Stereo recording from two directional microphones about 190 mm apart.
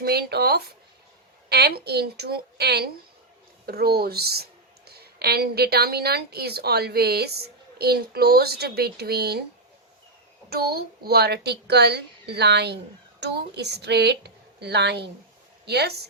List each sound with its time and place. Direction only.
0.0 s a child's voice: 55° right (ahead or behind)
10.5 s a child's voice: 55° right (ahead or behind)